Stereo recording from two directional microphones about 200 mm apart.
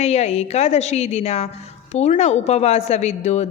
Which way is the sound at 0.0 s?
30° left (ahead or behind).